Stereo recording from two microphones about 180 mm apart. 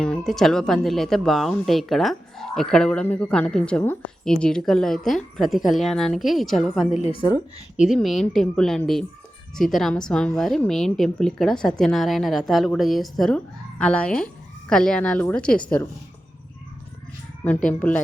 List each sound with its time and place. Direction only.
0.0 s speech: 5° left (ahead or behind)
6.9 s a woman's voice: 40° left (ahead or behind)
7.8 s speech: centre (ahead or behind)
17.7 s speech: 10° left (ahead or behind)